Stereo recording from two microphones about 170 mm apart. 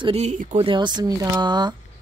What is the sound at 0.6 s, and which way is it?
Speech, 30° right (ahead or behind).